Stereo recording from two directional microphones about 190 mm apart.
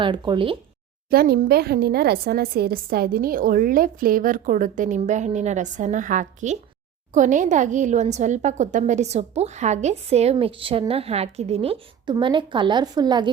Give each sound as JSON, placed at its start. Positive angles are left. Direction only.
{"t": 0.0, "sound": "speech", "side_deg": -25}
{"t": 1.1, "sound": "a woman's voice", "side_deg": -55}